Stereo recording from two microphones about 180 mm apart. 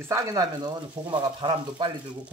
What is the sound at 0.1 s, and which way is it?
Speech, 20° right (ahead or behind).